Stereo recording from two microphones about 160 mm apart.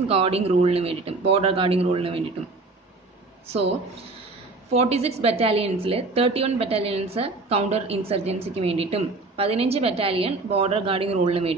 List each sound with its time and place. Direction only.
0.1 s a woman's voice: 40° right (ahead or behind)
4.7 s a woman's voice: 40° right (ahead or behind)